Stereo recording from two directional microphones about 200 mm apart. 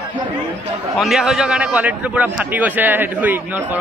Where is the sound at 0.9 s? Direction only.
Centre (ahead or behind).